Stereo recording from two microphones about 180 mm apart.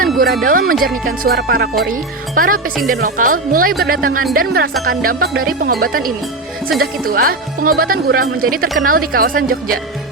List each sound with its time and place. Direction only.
0.4 s speech: 50° right (ahead or behind)